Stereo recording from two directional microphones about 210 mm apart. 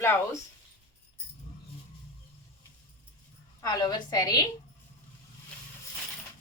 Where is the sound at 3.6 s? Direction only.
20° left (ahead or behind).